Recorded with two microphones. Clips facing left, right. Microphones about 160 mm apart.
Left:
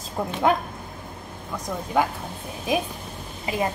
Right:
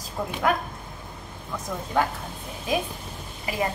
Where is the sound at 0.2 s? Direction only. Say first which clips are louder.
Left 2 dB; 15° left (ahead or behind).